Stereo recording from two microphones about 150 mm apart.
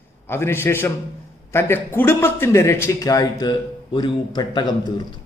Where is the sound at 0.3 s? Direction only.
15° left (ahead or behind).